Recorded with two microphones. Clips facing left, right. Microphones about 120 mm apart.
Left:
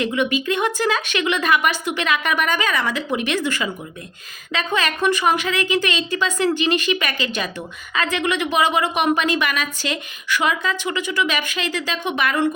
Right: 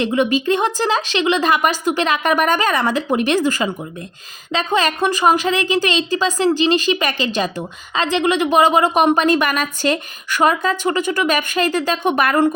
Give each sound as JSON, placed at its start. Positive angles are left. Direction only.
{"t": 0.0, "sound": "speech", "side_deg": -35}